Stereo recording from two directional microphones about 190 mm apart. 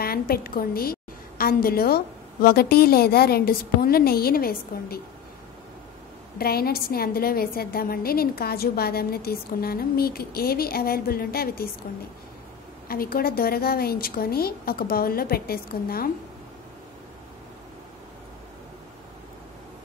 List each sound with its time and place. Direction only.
0.0 s a woman's voice: 50° left (ahead or behind)
6.3 s a woman's voice: 55° left (ahead or behind)
12.8 s a woman's voice: 50° left (ahead or behind)